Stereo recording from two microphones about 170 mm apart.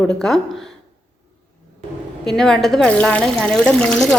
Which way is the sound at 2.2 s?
Centre (ahead or behind).